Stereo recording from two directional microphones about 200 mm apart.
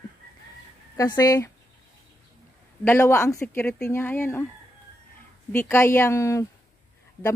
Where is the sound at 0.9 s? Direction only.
15° left (ahead or behind).